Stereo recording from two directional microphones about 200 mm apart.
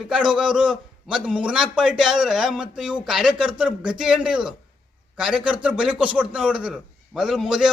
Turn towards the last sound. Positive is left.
turn(degrees=0)  # may be behind; listen again after turning